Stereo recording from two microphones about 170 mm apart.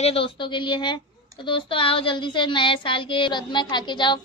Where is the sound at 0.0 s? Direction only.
35° left (ahead or behind).